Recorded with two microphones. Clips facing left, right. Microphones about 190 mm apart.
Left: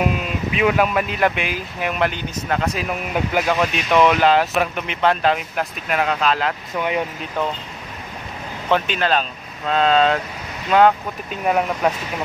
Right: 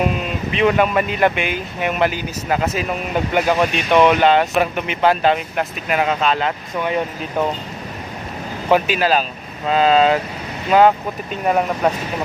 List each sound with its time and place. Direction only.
0.5 s speech: 5° left (ahead or behind)
8.6 s speech: 10° right (ahead or behind)